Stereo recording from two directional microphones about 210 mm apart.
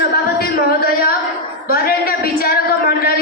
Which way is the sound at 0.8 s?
45° left (ahead or behind).